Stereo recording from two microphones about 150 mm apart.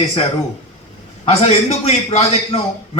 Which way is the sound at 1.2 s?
45° left (ahead or behind).